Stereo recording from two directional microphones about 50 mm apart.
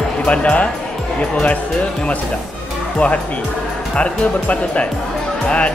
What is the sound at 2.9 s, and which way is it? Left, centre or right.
Speech, left.